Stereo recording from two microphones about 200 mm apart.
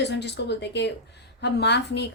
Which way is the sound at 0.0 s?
60° left (ahead or behind).